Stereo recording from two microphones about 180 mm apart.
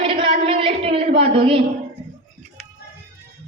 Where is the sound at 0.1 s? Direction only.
30° right (ahead or behind).